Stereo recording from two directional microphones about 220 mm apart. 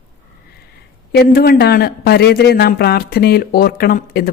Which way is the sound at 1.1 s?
45° left (ahead or behind).